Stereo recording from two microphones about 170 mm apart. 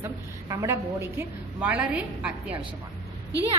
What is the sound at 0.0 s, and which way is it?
A woman's voice, 20° right (ahead or behind).